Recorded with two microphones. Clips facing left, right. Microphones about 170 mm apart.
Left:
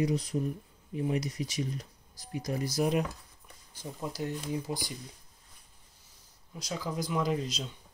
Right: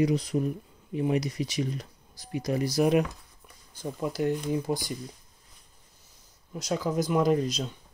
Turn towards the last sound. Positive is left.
turn(degrees=-45)  # may be behind; listen again after turning